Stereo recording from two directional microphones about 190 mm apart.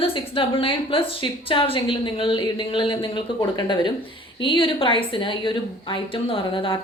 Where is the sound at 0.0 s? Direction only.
30° left (ahead or behind).